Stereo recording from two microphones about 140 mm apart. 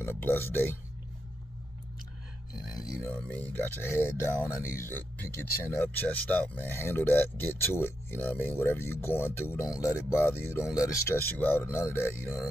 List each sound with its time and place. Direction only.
0.0 s speech: 15° left (ahead or behind)
3.0 s speech: 10° left (ahead or behind)